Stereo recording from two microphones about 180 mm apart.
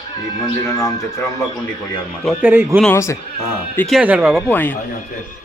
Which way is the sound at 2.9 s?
15° left (ahead or behind).